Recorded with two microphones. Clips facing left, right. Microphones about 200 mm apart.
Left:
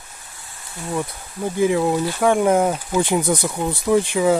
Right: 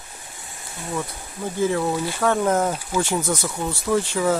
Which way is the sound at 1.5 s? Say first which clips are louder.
Left 4 dB; 15° left (ahead or behind).